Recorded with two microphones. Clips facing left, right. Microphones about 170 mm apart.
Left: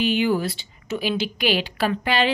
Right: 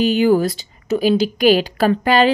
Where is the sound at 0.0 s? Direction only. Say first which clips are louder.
Right 7 dB; 40° right (ahead or behind).